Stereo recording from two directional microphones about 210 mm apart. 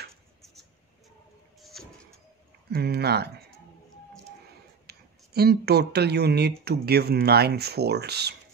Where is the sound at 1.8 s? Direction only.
Centre (ahead or behind).